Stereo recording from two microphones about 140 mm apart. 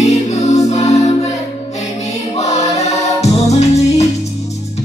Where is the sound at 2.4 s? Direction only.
50° left (ahead or behind).